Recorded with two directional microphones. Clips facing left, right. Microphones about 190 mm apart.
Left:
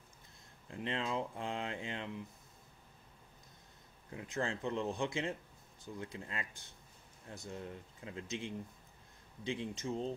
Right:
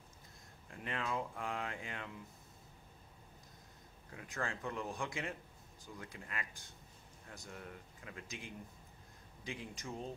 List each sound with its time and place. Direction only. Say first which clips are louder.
0.7 s speech: left 3 dB; 25° left (ahead or behind)
4.1 s speech: left 4 dB; 25° left (ahead or behind)